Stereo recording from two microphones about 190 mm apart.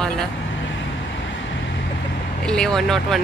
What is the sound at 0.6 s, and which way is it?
Vehicle, 75° left (ahead or behind).